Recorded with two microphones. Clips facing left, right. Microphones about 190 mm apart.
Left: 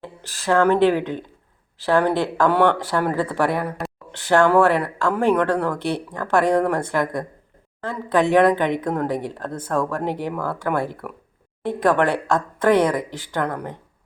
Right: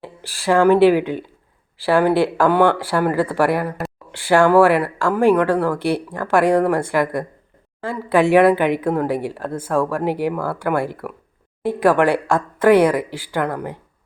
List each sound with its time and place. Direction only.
0.0 s speech: 10° right (ahead or behind)